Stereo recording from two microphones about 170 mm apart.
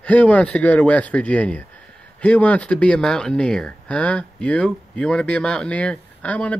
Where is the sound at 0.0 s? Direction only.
10° left (ahead or behind).